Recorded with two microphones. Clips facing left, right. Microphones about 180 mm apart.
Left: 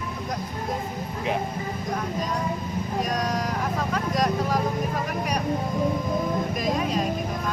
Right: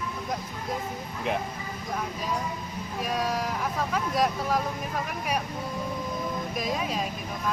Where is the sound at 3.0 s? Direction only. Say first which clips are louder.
Left 2 dB; 5° right (ahead or behind).